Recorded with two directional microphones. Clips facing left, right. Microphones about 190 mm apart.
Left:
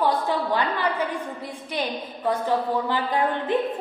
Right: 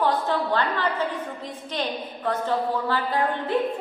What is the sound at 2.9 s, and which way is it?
Speech, 15° left (ahead or behind).